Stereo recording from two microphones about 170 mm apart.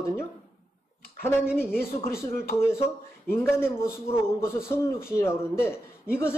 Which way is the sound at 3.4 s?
15° left (ahead or behind).